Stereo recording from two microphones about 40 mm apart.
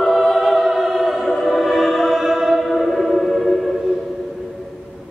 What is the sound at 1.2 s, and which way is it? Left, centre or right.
Music, centre.